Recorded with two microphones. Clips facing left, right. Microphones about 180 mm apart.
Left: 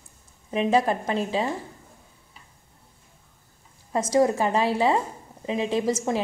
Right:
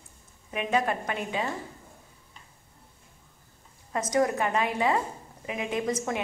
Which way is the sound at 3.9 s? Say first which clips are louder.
Left 4 dB; 30° left (ahead or behind).